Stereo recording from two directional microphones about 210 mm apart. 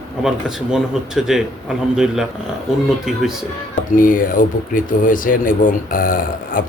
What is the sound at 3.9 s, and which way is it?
Speech, 40° left (ahead or behind).